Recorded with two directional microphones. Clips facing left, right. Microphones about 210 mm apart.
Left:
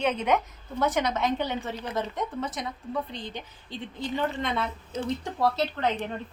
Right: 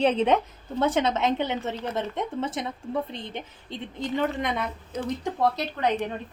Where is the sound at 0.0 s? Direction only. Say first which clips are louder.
Right 4 dB; 30° right (ahead or behind); by 6.0 s 15° right (ahead or behind).